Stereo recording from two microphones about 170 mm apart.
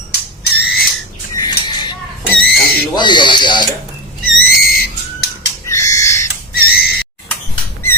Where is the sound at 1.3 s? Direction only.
25° left (ahead or behind).